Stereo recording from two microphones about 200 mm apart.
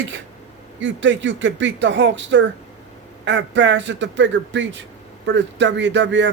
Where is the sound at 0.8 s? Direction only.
65° right (ahead or behind).